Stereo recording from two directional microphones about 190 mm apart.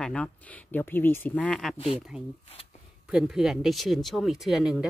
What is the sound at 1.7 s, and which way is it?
Speech, 30° left (ahead or behind).